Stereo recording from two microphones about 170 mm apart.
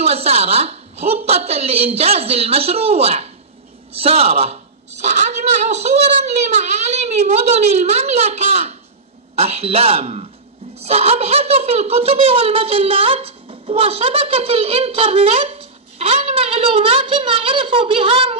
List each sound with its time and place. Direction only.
0.0 s speech: 40° right (ahead or behind)